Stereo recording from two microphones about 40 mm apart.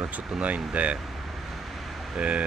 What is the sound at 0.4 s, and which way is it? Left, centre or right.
Speech, right.